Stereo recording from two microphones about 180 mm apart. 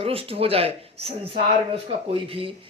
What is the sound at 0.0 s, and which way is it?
A man's voice, 30° right (ahead or behind).